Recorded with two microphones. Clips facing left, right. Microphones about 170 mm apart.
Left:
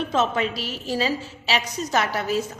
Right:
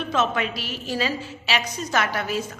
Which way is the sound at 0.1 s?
35° left (ahead or behind).